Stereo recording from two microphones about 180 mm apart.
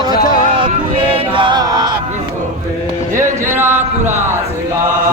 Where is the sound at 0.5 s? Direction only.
30° right (ahead or behind).